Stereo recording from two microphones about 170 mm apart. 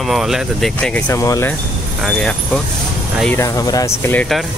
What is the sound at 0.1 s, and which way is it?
Speech, centre (ahead or behind).